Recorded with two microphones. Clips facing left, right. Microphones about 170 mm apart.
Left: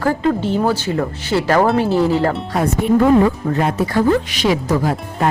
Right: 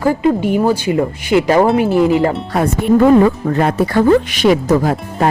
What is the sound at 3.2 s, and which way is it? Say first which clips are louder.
Speech: right 3 dB; 65° right (ahead or behind).